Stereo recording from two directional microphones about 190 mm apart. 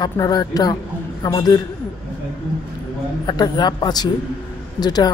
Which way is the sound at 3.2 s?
20° left (ahead or behind).